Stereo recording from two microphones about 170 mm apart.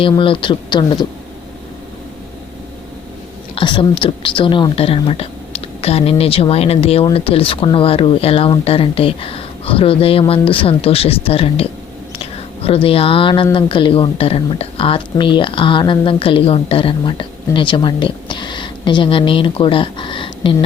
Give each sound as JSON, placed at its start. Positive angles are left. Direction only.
{"t": 0.0, "sound": "speech", "side_deg": 30}
{"t": 3.5, "sound": "a woman's voice", "side_deg": 30}